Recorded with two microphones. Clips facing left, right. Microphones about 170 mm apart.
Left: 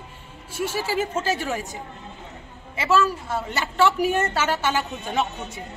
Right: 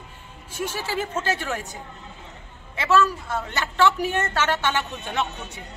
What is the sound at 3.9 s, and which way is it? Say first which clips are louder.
Speech: left 3 dB; 35° left (ahead or behind).